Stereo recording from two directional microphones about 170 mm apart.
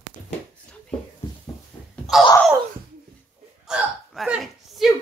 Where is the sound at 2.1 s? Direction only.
Centre (ahead or behind).